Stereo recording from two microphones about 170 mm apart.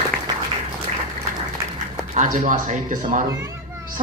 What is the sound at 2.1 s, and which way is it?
A man's voice, 45° right (ahead or behind).